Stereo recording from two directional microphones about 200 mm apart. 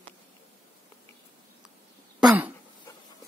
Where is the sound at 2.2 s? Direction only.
5° right (ahead or behind).